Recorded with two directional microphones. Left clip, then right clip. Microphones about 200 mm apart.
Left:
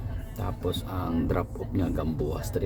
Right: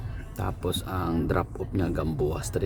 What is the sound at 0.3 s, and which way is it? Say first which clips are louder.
Speech: right 1 dB; 25° right (ahead or behind).